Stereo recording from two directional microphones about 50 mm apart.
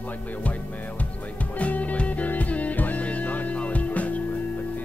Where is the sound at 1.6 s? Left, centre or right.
Left.